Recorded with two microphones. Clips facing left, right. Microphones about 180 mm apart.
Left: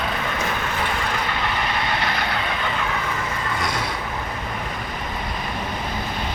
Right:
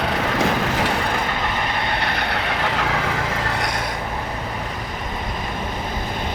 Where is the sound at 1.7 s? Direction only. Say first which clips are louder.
Right 1 dB; 55° right (ahead or behind); by 3.5 s 85° right.